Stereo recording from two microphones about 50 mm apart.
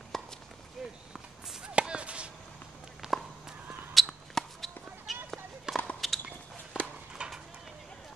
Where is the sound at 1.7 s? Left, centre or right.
Right.